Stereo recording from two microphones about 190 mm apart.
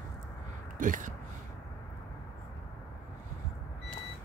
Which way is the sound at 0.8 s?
45° right (ahead or behind).